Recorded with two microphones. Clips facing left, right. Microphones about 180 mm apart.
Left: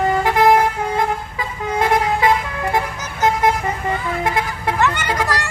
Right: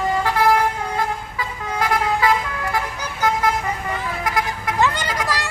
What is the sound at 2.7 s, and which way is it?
Vehicle, 25° left (ahead or behind).